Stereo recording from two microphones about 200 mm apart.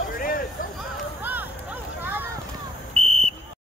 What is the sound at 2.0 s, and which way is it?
Vehicle, 10° right (ahead or behind).